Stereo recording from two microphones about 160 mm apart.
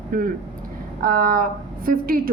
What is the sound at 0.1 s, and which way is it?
A woman's voice, 60° right (ahead or behind).